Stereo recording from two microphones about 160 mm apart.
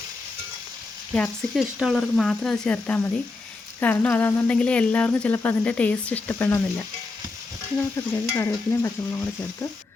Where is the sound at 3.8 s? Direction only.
10° left (ahead or behind).